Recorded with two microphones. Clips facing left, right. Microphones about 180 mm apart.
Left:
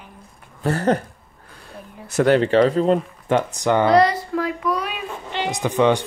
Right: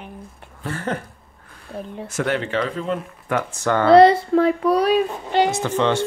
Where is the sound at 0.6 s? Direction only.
40° left (ahead or behind).